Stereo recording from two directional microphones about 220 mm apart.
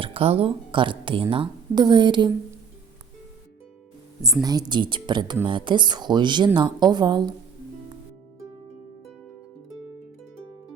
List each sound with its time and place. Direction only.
0.0 s speech: 25° right (ahead or behind)
4.7 s speech: 20° right (ahead or behind)